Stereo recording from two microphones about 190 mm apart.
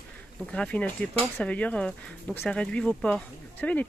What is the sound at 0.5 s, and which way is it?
Speech, 5° left (ahead or behind).